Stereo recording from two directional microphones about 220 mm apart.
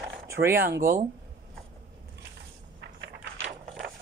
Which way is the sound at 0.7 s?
45° right (ahead or behind).